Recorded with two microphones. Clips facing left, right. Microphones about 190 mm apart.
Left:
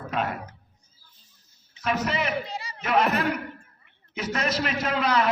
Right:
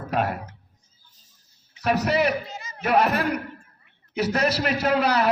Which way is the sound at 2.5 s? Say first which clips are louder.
Left 3 dB; 35° left (ahead or behind).